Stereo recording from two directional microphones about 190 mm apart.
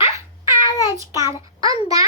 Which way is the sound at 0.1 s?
15° right (ahead or behind).